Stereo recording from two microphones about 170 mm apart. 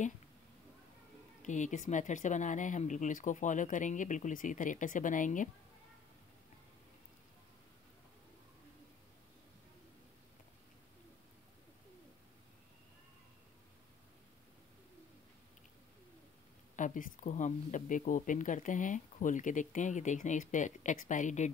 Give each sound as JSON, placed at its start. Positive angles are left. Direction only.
{"t": 1.4, "sound": "speech", "side_deg": 45}
{"t": 16.7, "sound": "speech", "side_deg": 50}